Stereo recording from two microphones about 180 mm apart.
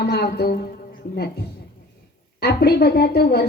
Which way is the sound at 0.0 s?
65° left (ahead or behind).